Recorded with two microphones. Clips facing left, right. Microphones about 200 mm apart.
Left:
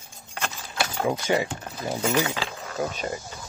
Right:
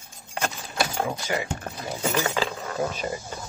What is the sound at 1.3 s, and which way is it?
Speech, 25° left (ahead or behind).